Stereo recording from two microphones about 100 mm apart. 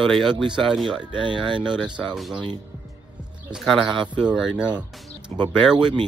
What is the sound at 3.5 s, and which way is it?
Speech, centre (ahead or behind).